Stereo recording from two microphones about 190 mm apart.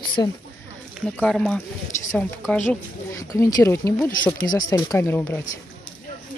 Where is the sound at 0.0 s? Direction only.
25° left (ahead or behind).